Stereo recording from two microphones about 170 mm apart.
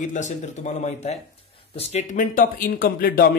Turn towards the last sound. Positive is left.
turn(degrees=60)  # may be behind; listen again after turning